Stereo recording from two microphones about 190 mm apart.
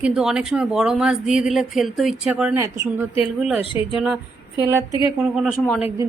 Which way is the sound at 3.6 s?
25° left (ahead or behind).